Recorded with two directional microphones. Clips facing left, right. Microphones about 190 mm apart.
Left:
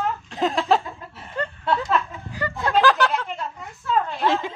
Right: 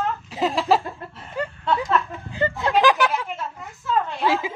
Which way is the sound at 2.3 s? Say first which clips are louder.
Right 2 dB; 20° right (ahead or behind).